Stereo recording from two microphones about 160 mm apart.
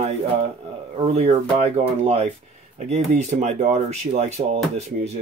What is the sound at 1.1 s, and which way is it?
Speech, 45° right (ahead or behind).